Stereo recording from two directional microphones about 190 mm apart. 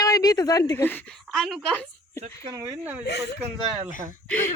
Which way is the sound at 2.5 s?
15° right (ahead or behind).